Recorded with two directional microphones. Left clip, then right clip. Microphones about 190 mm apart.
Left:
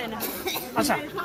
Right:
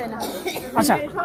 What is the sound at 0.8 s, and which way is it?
Speech, 60° right (ahead or behind).